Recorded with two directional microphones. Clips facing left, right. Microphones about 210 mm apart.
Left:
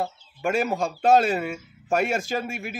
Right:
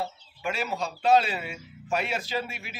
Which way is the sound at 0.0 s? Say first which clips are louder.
Left 5 dB; 50° left (ahead or behind).